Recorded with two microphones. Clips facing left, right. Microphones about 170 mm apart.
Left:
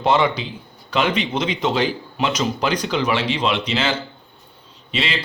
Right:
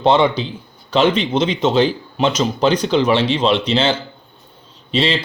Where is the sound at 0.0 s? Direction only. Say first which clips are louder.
Right 4 dB; 25° right (ahead or behind).